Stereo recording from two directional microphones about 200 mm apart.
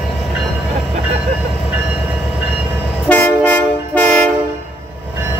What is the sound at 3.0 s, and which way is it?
Train, 10° left (ahead or behind).